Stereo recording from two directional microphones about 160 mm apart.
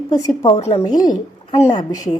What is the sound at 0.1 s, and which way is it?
Speech, 25° left (ahead or behind).